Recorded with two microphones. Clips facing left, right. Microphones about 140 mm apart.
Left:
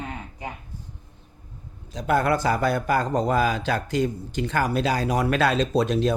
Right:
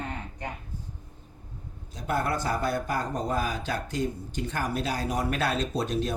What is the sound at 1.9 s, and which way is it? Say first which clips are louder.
Speech: left 7 dB; 90° left.